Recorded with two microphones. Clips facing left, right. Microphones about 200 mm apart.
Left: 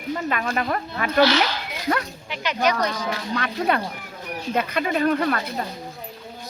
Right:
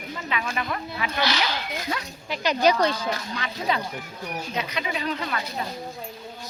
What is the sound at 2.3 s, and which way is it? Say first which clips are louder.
Speech: right 2 dB; 35° right (ahead or behind).